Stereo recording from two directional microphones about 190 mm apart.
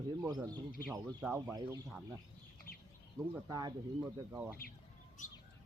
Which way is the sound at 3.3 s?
20° right (ahead or behind).